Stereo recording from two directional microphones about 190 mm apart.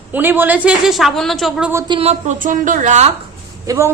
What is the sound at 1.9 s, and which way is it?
A woman's voice, 30° right (ahead or behind).